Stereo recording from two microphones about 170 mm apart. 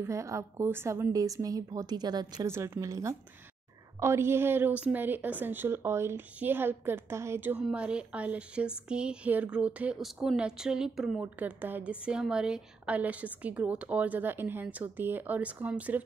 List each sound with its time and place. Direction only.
0.0 s a woman's voice: 15° right (ahead or behind)